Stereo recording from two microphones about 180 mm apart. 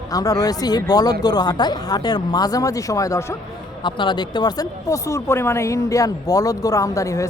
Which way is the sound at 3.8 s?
25° left (ahead or behind).